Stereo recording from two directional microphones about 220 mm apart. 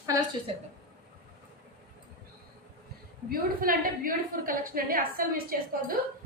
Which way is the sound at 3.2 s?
40° right (ahead or behind).